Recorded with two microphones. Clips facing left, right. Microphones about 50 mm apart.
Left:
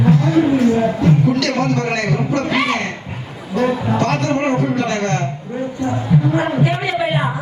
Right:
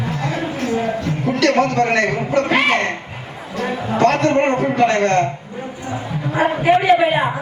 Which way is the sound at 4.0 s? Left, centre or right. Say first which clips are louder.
Right 7 dB; right.